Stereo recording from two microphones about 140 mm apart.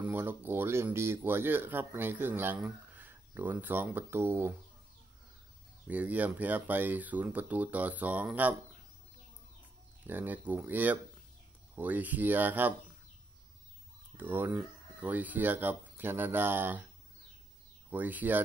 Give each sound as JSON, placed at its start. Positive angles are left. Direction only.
{"t": 0.0, "sound": "speech", "side_deg": -15}
{"t": 5.9, "sound": "speech", "side_deg": -10}
{"t": 10.0, "sound": "speech", "side_deg": -15}
{"t": 14.1, "sound": "speech", "side_deg": -15}
{"t": 17.8, "sound": "speech", "side_deg": -10}